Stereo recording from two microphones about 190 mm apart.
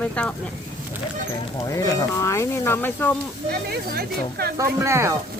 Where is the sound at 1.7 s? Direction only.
15° left (ahead or behind).